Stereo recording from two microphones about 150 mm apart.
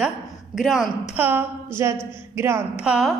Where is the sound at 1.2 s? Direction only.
15° right (ahead or behind).